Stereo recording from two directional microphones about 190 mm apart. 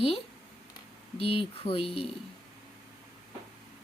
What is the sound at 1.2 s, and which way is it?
Speech, 30° left (ahead or behind).